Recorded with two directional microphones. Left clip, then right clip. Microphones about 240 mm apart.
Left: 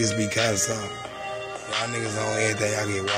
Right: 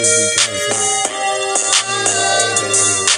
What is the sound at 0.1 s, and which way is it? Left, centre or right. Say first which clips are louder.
Music: right 8 dB; right.